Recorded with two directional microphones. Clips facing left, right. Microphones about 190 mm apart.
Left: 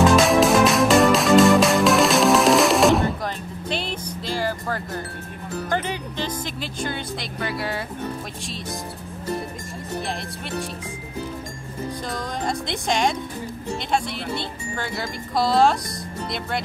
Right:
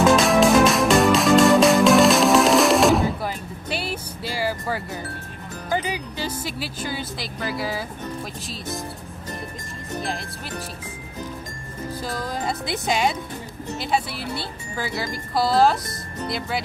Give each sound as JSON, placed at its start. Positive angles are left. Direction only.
{"t": 0.0, "sound": "music", "side_deg": 0}
{"t": 5.7, "sound": "speech", "side_deg": -5}
{"t": 12.1, "sound": "speech", "side_deg": -5}